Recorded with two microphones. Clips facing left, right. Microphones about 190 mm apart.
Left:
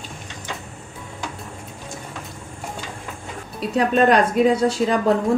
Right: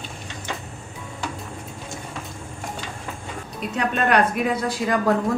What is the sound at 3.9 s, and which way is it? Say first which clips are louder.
Speech: left 3 dB; 30° left (ahead or behind).